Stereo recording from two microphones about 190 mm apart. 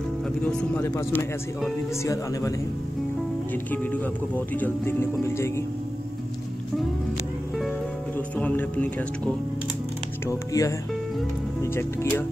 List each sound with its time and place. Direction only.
0.4 s speech: 5° left (ahead or behind)
4.6 s speech: 10° left (ahead or behind)
8.4 s speech: 5° left (ahead or behind)